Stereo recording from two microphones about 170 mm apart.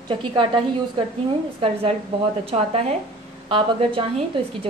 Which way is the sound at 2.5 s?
40° right (ahead or behind).